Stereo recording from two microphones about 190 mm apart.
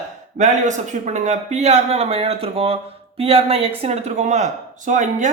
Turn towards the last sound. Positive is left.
turn(degrees=-40)  # may be behind; listen again after turning